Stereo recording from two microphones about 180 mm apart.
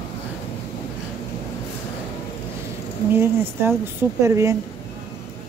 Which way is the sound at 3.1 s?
10° right (ahead or behind).